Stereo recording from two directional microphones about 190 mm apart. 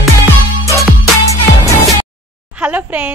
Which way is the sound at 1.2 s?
15° left (ahead or behind).